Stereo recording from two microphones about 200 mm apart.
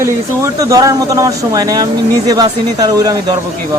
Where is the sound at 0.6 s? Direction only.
15° right (ahead or behind).